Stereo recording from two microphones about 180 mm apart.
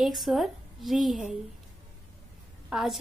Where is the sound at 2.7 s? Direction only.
Centre (ahead or behind).